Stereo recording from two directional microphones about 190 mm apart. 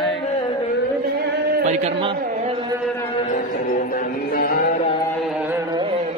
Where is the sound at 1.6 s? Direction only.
35° right (ahead or behind).